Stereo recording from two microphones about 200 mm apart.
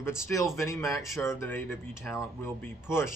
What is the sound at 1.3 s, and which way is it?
Speech, 10° left (ahead or behind).